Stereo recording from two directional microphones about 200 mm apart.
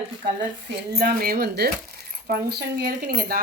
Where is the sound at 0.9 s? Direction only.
50° right (ahead or behind).